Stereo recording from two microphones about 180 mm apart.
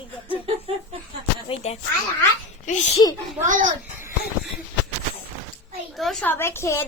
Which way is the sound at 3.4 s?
45° right (ahead or behind).